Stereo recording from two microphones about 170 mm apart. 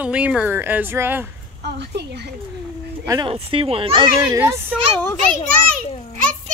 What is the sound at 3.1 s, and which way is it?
Speech, 25° right (ahead or behind).